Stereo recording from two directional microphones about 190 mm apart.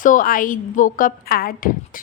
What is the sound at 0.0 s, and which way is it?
A woman's voice, 45° left (ahead or behind).